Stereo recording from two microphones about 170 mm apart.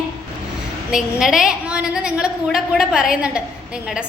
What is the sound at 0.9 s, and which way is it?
A woman's voice, 5° right (ahead or behind).